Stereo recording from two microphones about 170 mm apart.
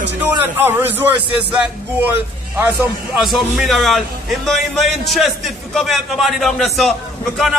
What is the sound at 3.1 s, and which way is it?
A man's voice, centre (ahead or behind).